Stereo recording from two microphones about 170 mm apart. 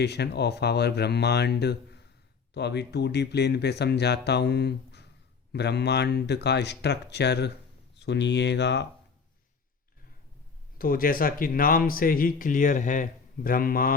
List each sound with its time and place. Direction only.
0.0 s speech: 75° left (ahead or behind)
10.8 s speech: 55° left (ahead or behind)